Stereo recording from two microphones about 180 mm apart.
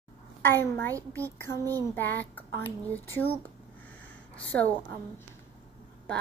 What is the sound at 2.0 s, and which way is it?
Speech, 10° left (ahead or behind).